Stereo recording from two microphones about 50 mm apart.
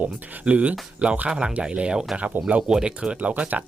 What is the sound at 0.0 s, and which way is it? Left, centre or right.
Speech, right.